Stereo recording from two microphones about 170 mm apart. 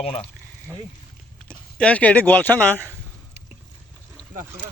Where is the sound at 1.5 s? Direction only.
5° left (ahead or behind).